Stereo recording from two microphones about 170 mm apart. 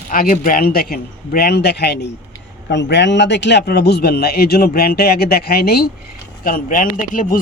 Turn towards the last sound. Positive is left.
turn(degrees=50)  # may be behind; listen again after turning